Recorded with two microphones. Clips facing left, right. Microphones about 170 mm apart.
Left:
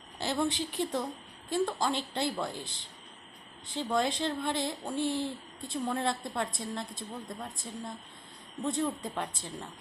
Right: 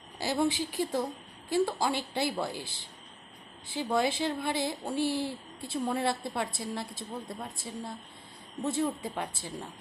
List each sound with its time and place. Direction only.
0.4 s speech: 5° right (ahead or behind)